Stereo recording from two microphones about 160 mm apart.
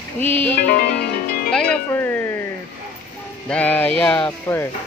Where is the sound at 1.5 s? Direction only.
5° left (ahead or behind).